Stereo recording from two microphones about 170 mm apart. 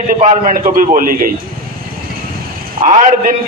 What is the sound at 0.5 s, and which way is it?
Speech, 55° right (ahead or behind).